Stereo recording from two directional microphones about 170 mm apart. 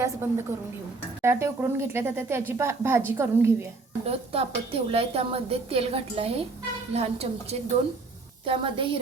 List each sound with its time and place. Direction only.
0.2 s a woman's voice: 15° right (ahead or behind)
4.0 s a woman's voice: 35° right (ahead or behind)